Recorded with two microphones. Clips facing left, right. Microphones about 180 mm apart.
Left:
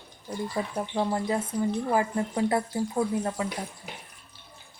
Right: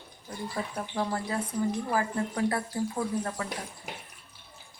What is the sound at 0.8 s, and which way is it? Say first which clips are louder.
Speech: left 4 dB; 20° left (ahead or behind).